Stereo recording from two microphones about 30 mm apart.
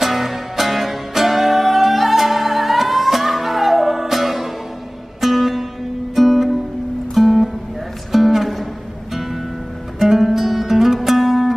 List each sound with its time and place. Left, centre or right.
0.0 s music: centre
9.9 s music: centre